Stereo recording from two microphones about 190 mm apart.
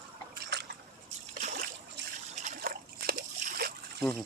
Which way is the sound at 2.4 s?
50° right (ahead or behind).